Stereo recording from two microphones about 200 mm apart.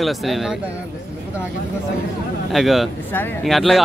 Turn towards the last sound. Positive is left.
turn(degrees=0)  # may be behind; listen again after turning